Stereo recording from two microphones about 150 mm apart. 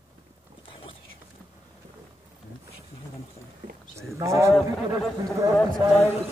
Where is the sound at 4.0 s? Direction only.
20° right (ahead or behind).